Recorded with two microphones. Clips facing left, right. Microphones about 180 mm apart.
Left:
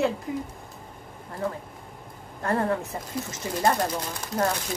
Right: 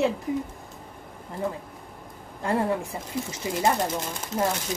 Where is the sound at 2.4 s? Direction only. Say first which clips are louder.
Even; 10° right (ahead or behind).